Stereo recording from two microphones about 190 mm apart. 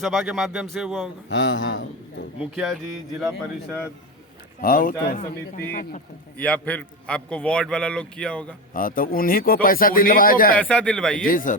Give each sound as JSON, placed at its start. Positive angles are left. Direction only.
{"t": 0.0, "sound": "a man's voice", "side_deg": 0}
{"t": 1.3, "sound": "a man's voice", "side_deg": 75}
{"t": 2.4, "sound": "a man's voice", "side_deg": -5}
{"t": 4.6, "sound": "speech", "side_deg": 50}
{"t": 6.3, "sound": "a man's voice", "side_deg": 5}
{"t": 8.7, "sound": "speech", "side_deg": 45}
{"t": 10.6, "sound": "a man's voice", "side_deg": 5}
{"t": 11.3, "sound": "speech", "side_deg": 45}